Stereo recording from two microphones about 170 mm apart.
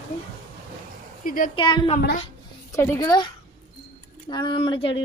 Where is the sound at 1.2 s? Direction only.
55° left (ahead or behind).